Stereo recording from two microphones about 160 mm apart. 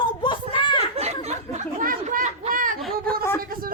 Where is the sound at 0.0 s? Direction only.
30° left (ahead or behind).